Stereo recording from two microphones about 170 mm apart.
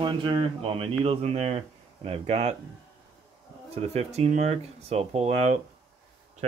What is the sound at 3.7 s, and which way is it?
Speech, 40° right (ahead or behind).